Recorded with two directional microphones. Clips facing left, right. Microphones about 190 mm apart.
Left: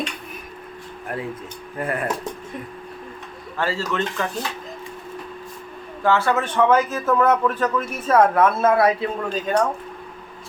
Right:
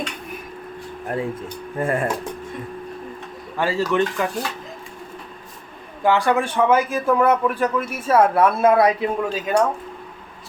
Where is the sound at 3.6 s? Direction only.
15° right (ahead or behind).